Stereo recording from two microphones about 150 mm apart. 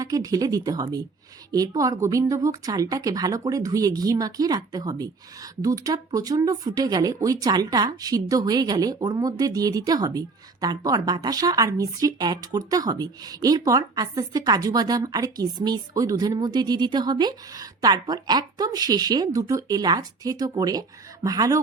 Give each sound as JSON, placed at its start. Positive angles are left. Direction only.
{"t": 0.0, "sound": "a woman's voice", "side_deg": -25}